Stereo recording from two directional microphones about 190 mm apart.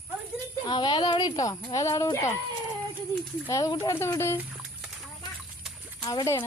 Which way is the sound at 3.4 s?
20° left (ahead or behind).